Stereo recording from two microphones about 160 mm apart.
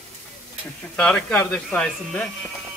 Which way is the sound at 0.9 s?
5° left (ahead or behind).